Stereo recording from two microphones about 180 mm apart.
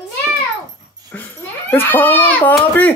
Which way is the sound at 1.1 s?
10° left (ahead or behind).